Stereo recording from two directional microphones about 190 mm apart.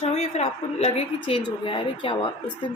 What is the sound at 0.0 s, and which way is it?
A woman's voice, 35° left (ahead or behind).